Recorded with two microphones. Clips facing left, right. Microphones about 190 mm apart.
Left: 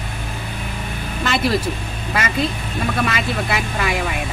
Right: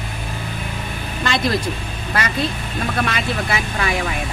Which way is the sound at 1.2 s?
5° left (ahead or behind).